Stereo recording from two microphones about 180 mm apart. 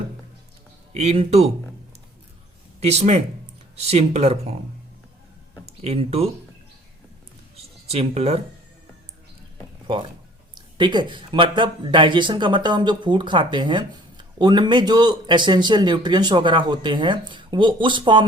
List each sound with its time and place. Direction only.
0.9 s speech: 35° right (ahead or behind)
2.8 s speech: 40° right (ahead or behind)
5.6 s speech: 35° right (ahead or behind)
7.5 s a sound: 35° right (ahead or behind)
9.8 s speech: 30° right (ahead or behind)